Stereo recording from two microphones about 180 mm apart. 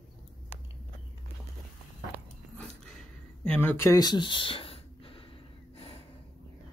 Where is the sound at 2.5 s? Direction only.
5° left (ahead or behind); by 6.0 s 30° left (ahead or behind).